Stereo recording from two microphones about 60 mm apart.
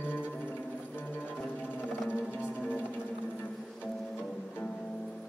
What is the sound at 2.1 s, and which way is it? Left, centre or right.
Music, left.